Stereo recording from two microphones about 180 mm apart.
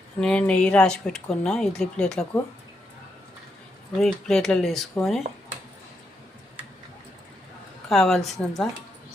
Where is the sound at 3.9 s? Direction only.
5° left (ahead or behind).